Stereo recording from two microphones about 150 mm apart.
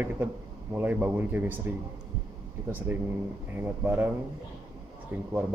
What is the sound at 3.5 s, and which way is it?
Speech, 15° right (ahead or behind).